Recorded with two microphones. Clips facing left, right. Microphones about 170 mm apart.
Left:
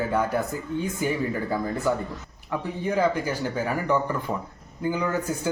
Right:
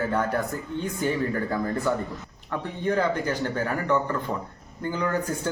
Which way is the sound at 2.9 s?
10° left (ahead or behind).